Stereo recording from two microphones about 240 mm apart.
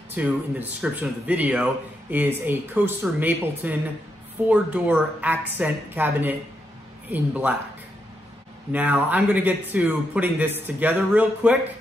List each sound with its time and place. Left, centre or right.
0.1 s speech: centre
8.7 s speech: centre